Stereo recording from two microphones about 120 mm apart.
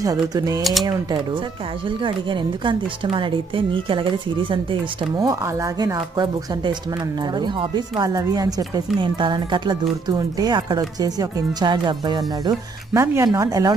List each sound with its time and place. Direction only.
0.0 s speech: 30° right (ahead or behind)
1.9 s speech: 45° right (ahead or behind)
5.1 s speech: 30° right (ahead or behind)